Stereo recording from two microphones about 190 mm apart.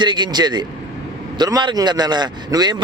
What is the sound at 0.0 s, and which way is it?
Speech, 25° right (ahead or behind).